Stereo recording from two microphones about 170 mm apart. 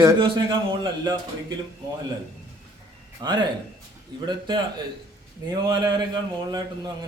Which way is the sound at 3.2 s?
25° right (ahead or behind).